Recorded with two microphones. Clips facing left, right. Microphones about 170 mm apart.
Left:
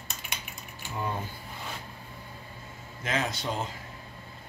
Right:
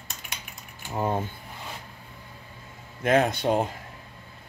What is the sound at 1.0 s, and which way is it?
Speech, 45° right (ahead or behind).